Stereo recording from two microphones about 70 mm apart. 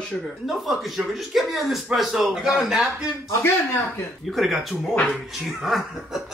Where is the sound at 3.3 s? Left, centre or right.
Left.